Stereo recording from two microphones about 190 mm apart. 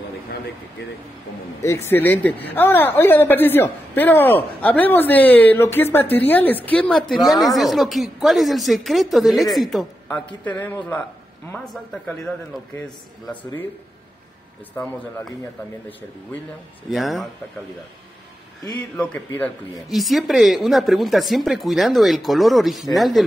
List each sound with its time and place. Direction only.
1.6 s a woman's voice: 15° left (ahead or behind)
14.8 s a woman's voice: 15° left (ahead or behind)
16.9 s speech: centre (ahead or behind)
18.9 s speech: 5° left (ahead or behind)